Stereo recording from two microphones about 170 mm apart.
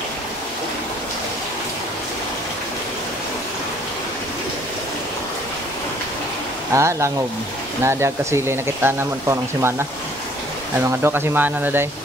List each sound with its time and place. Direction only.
6.7 s speech: 15° right (ahead or behind)
10.8 s speech: 15° right (ahead or behind)